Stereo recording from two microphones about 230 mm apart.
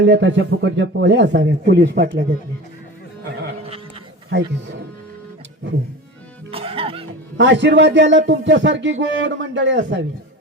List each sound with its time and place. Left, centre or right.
0.0 s speech: right
4.3 s speech: right
6.5 s music: right
7.3 s speech: right